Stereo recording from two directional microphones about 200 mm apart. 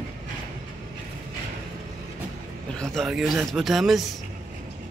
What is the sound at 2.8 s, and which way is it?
Speech, centre (ahead or behind).